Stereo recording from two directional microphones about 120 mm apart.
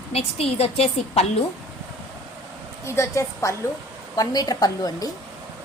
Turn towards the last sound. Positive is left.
turn(degrees=30)  # may be behind; listen again after turning